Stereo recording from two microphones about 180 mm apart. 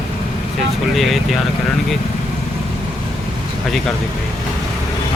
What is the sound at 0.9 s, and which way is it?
Speech, centre (ahead or behind).